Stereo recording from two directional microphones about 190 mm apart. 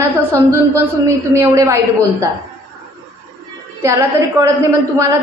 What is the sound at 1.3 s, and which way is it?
Speech, 15° right (ahead or behind).